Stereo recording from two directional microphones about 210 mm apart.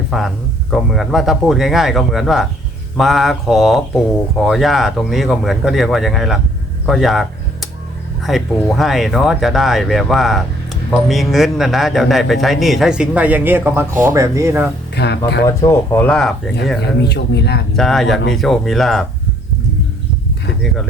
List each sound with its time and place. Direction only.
0.1 s speech: centre (ahead or behind)
6.8 s a sound: centre (ahead or behind)
8.2 s speech: centre (ahead or behind)
14.9 s speech: 55° left (ahead or behind)
15.4 s speech: 10° left (ahead or behind)
17.0 s speech: 55° left (ahead or behind)
17.7 s speech: centre (ahead or behind)